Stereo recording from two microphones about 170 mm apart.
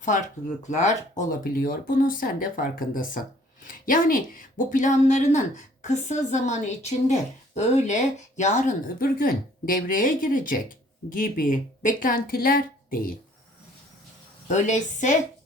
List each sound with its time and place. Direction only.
0.0 s speech: 45° left (ahead or behind)
14.4 s speech: 45° left (ahead or behind)